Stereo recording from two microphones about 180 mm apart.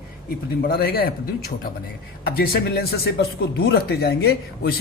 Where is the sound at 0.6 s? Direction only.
60° left (ahead or behind).